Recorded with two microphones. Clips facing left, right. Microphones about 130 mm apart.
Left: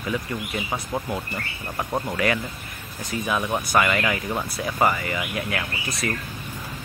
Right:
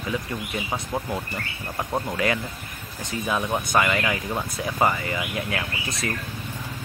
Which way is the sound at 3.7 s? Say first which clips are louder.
Left 1 dB; 20° right (ahead or behind).